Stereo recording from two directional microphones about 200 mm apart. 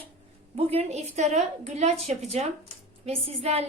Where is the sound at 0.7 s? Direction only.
35° right (ahead or behind).